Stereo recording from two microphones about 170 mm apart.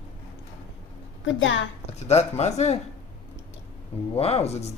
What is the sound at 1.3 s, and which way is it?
Speech, 90° left.